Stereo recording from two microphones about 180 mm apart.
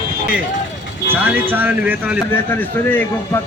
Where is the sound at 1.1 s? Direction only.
10° right (ahead or behind).